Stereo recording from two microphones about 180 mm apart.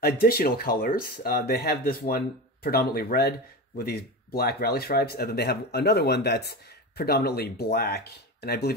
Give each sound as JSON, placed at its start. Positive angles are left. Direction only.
{"t": 0.0, "sound": "speech", "side_deg": 55}